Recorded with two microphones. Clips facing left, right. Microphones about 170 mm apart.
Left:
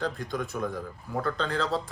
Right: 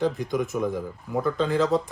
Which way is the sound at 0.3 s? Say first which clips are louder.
Right 6 dB; 20° right (ahead or behind).